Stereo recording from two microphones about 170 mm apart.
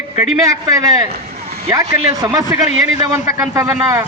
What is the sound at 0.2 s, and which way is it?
A man's voice, 20° right (ahead or behind).